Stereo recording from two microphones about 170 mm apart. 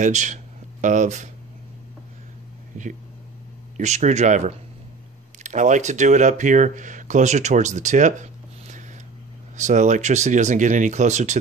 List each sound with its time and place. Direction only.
0.0 s speech: 45° right (ahead or behind)
2.8 s speech: 45° right (ahead or behind)